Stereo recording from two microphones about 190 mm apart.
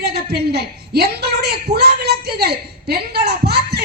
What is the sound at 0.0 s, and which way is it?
A woman's voice, 55° right (ahead or behind).